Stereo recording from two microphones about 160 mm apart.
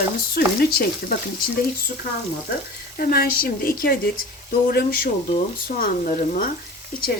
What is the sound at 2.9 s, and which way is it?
Stir, 70° left (ahead or behind).